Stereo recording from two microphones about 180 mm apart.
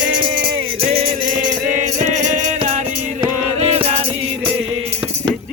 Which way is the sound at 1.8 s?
40° right (ahead or behind).